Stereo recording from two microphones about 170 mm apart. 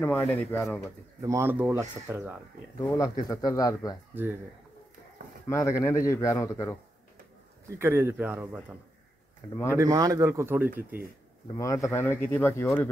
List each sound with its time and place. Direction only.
0.0 s speech: 10° left (ahead or behind)
1.2 s speech: 15° right (ahead or behind)
2.8 s speech: 20° left (ahead or behind)
4.1 s speech: 10° right (ahead or behind)
5.5 s speech: 20° left (ahead or behind)
7.8 s speech: 15° right (ahead or behind)
9.8 s speech: 20° right (ahead or behind)
11.5 s speech: 20° left (ahead or behind)